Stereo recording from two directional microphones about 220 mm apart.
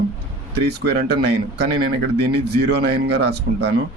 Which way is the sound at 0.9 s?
45° right (ahead or behind).